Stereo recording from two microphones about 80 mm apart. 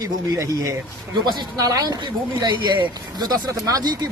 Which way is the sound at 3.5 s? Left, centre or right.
Right.